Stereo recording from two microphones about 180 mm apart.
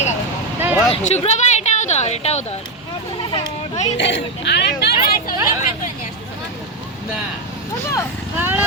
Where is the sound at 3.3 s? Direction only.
30° left (ahead or behind).